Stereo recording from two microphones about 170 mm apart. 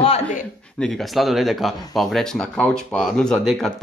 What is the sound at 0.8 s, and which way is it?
Speech, centre (ahead or behind).